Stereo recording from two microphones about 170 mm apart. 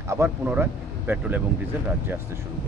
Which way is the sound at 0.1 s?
15° right (ahead or behind).